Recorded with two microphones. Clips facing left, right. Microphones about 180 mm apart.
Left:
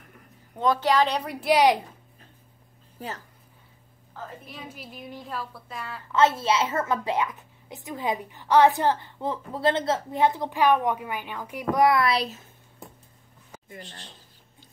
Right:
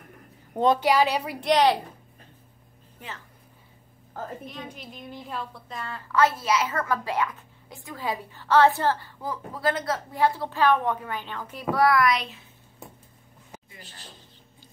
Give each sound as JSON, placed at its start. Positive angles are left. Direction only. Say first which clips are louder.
{"t": 0.7, "sound": "a woman's voice", "louder": "right 1 dB", "side_deg": -10}
{"t": 1.5, "sound": "a woman's voice", "louder": "left 1 dB", "side_deg": 10}
{"t": 3.0, "sound": "speech", "louder": "left 5 dB", "side_deg": 35}
{"t": 4.2, "sound": "a woman's voice", "louder": "right 4 dB", "side_deg": -45}
{"t": 4.5, "sound": "a woman's voice", "louder": "right 2 dB", "side_deg": 5}
{"t": 6.1, "sound": "a woman's voice", "louder": "left 1 dB", "side_deg": 25}
{"t": 13.7, "sound": "a woman's voice", "louder": "left 5 dB", "side_deg": -5}